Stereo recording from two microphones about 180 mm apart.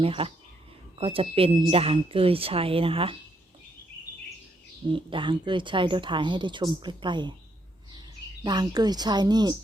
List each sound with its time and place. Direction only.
0.0 s speech: 30° right (ahead or behind)
5.1 s speech: 25° right (ahead or behind)
8.4 s speech: 25° right (ahead or behind)